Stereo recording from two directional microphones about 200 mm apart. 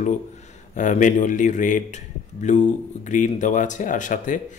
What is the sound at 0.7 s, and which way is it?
Speech, 40° left (ahead or behind).